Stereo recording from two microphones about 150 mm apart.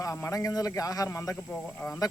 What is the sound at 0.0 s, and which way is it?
Speech, 20° left (ahead or behind).